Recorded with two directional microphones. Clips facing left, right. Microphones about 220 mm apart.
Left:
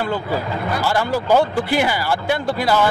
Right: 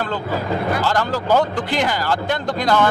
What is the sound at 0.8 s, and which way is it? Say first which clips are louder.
Speech: left 1 dB; 10° left (ahead or behind).